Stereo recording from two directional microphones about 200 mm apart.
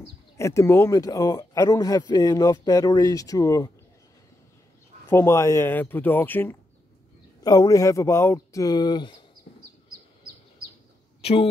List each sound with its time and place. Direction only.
0.4 s speech: 15° left (ahead or behind)
5.1 s speech: 15° left (ahead or behind)
11.1 s a sound: 30° left (ahead or behind)